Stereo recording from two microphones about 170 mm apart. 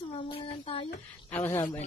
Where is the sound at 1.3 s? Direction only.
10° left (ahead or behind).